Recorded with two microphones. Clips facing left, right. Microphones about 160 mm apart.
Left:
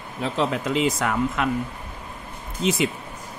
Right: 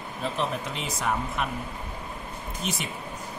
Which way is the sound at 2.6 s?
90° left.